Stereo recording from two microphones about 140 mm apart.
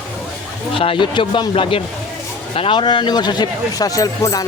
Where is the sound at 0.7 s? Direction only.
40° left (ahead or behind).